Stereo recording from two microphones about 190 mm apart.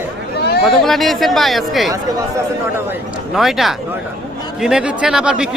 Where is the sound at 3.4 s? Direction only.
Centre (ahead or behind).